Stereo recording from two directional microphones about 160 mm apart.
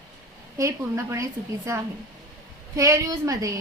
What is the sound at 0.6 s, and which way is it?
A woman's voice, 20° right (ahead or behind).